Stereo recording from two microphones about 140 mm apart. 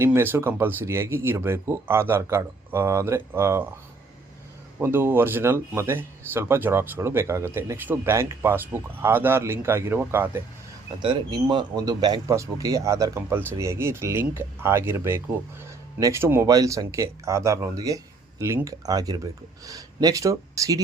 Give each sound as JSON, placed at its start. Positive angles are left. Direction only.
{"t": 0.0, "sound": "speech", "side_deg": -15}
{"t": 4.8, "sound": "speech", "side_deg": -15}
{"t": 11.0, "sound": "speech", "side_deg": -35}